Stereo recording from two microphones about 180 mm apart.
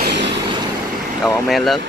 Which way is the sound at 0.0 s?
70° right (ahead or behind).